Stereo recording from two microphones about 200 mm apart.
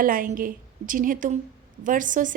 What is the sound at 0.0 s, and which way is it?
Speech, 45° right (ahead or behind).